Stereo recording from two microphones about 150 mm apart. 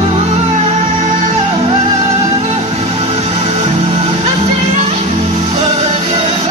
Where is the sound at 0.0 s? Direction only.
45° right (ahead or behind).